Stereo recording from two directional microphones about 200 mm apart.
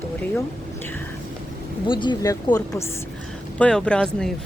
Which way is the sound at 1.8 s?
25° left (ahead or behind).